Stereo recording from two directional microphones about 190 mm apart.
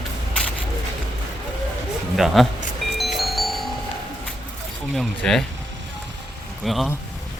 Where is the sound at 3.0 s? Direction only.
Centre (ahead or behind).